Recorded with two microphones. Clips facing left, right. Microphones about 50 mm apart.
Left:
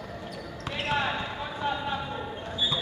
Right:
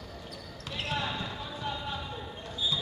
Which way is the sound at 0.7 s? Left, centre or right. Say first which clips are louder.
Left 5 dB; left.